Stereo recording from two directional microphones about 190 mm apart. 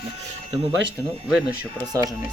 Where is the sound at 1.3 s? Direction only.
5° right (ahead or behind).